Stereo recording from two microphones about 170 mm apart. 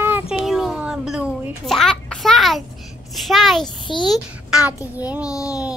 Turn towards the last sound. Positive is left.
turn(degrees=-5)  # may be behind; listen again after turning